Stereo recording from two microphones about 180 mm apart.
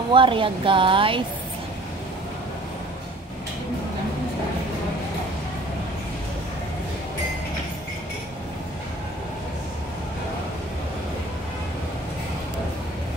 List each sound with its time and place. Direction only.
0.1 s speech: 30° right (ahead or behind)